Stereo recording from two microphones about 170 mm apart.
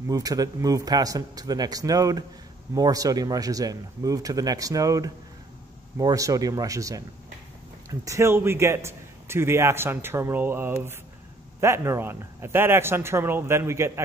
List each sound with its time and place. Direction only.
0.1 s speech: 20° right (ahead or behind)
8.0 s a man's voice: 15° right (ahead or behind)